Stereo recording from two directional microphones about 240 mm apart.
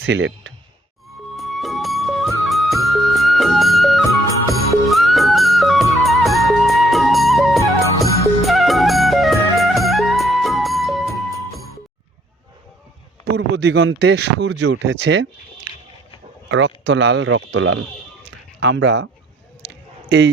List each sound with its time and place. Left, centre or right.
0.0 s speech: right
1.4 s music: centre
13.3 s speech: right
16.5 s speech: right
18.3 s a sound: right
20.1 s a man's voice: right